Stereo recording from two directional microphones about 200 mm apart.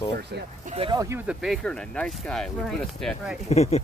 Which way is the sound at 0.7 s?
30° right (ahead or behind).